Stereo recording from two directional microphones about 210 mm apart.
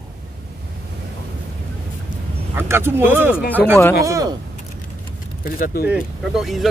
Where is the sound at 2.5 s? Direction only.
10° right (ahead or behind).